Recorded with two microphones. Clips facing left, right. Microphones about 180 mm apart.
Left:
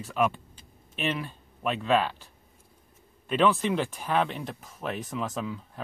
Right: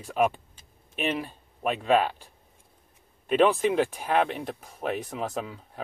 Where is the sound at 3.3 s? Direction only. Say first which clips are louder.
Right 2 dB; 55° right (ahead or behind).